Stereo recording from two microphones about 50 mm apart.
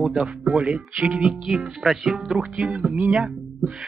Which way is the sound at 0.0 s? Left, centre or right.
Centre.